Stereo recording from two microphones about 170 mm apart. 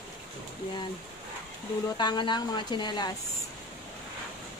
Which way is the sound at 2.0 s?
25° left (ahead or behind).